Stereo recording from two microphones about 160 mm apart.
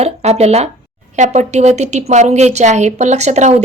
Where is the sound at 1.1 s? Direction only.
45° right (ahead or behind).